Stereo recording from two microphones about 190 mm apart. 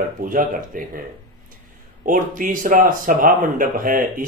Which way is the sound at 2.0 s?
45° right (ahead or behind).